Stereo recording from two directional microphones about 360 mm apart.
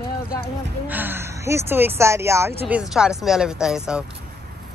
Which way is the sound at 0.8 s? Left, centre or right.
Centre.